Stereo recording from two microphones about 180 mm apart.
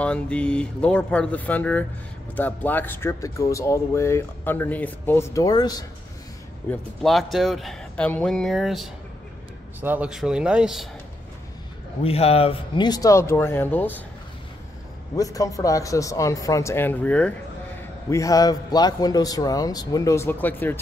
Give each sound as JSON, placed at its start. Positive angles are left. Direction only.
{"t": 0.0, "sound": "speech", "side_deg": 5}
{"t": 6.7, "sound": "speech", "side_deg": 0}
{"t": 12.0, "sound": "speech", "side_deg": 35}
{"t": 15.1, "sound": "speech", "side_deg": 20}
{"t": 18.1, "sound": "a man's voice", "side_deg": 20}